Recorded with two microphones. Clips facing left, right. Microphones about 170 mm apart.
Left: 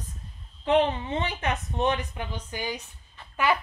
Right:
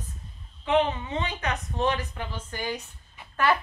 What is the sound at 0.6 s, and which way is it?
Speech, 35° left (ahead or behind).